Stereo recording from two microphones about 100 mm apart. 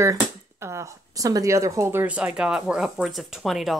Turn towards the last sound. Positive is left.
turn(degrees=0)  # may be behind; listen again after turning